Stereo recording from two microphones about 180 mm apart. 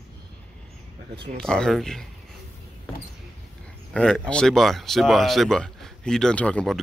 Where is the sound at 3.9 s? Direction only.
5° left (ahead or behind).